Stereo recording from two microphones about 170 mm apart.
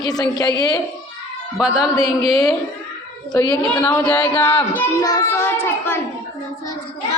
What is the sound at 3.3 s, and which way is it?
Speech, 20° left (ahead or behind).